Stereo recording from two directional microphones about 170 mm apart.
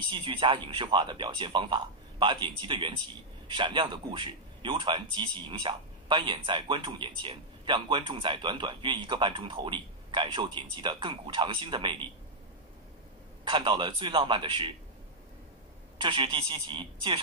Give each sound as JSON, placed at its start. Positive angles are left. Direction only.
{"t": 0.1, "sound": "a man's voice", "side_deg": -30}
{"t": 13.5, "sound": "a man's voice", "side_deg": -25}
{"t": 16.0, "sound": "a man's voice", "side_deg": -30}